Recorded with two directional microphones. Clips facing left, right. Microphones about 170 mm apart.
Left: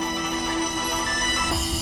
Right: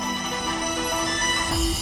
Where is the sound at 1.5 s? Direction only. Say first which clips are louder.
Right 5 dB; centre (ahead or behind).